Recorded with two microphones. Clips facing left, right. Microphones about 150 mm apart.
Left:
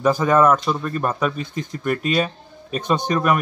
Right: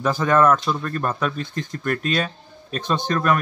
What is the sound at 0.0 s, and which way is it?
Speech, 5° left (ahead or behind).